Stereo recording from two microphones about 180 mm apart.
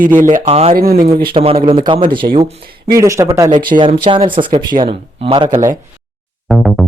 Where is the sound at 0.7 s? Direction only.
55° right (ahead or behind).